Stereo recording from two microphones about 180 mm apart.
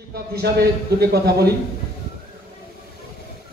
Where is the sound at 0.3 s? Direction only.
60° right (ahead or behind).